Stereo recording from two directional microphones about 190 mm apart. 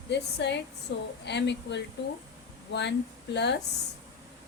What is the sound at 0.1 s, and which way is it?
Speech, 65° left (ahead or behind).